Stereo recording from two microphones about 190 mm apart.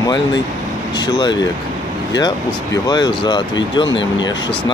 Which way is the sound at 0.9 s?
20° left (ahead or behind).